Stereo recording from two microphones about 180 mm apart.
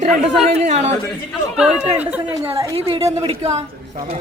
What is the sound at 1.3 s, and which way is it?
Speech, 5° right (ahead or behind).